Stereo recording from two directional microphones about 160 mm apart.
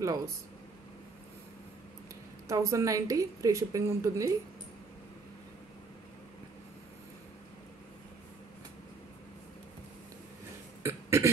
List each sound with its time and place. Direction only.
0.0 s a woman's voice: 20° right (ahead or behind)
2.4 s a woman's voice: 20° right (ahead or behind)
10.8 s a sound: 15° right (ahead or behind)